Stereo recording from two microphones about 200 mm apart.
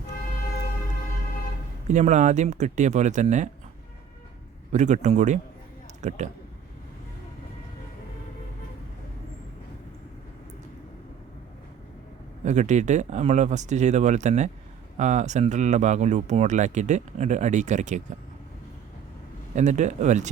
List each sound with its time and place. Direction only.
1.9 s speech: 35° right (ahead or behind)
4.7 s speech: 35° right (ahead or behind)
12.5 s speech: 35° right (ahead or behind)
19.5 s speech: 35° right (ahead or behind)